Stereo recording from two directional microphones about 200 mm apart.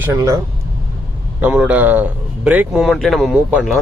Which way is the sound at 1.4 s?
5° right (ahead or behind).